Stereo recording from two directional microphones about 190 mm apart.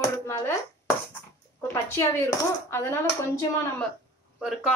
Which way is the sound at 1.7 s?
15° left (ahead or behind).